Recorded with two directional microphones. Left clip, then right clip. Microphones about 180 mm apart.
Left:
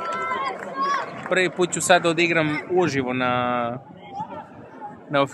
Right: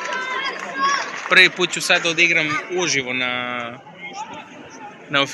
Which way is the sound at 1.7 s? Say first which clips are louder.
Even; 40° left (ahead or behind).